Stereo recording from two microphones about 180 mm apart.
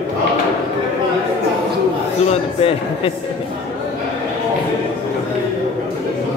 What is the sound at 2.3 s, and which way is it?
Speech, 35° left (ahead or behind).